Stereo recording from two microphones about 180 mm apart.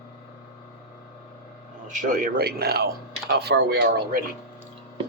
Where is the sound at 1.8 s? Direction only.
45° right (ahead or behind).